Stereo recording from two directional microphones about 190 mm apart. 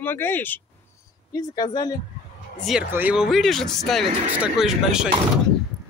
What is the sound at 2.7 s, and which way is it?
Speech, 10° right (ahead or behind).